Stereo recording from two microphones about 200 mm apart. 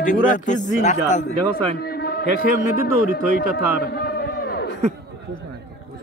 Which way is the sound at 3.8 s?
50° left (ahead or behind).